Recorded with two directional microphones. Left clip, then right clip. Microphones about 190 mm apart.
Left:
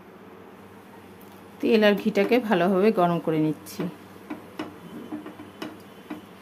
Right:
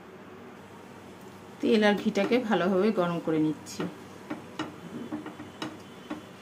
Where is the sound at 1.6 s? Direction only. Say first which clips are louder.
Left 4 dB; 20° left (ahead or behind).